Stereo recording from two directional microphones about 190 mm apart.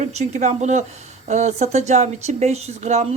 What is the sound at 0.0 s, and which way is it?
Speech, 35° right (ahead or behind).